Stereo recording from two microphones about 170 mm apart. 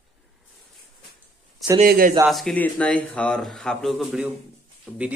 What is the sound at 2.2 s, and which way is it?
Speech, centre (ahead or behind).